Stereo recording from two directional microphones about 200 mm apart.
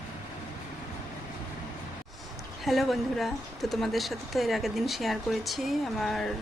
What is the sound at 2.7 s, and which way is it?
Speech, centre (ahead or behind).